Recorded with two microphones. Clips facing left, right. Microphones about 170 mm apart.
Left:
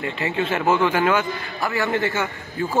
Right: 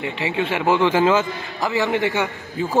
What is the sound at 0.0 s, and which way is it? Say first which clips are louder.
A man's voice: right 1 dB; 15° right (ahead or behind).